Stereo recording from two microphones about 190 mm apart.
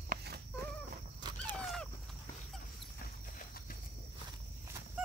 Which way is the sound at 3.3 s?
50° left (ahead or behind).